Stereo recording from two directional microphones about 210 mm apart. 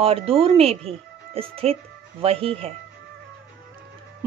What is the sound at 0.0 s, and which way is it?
A woman's voice, 30° right (ahead or behind).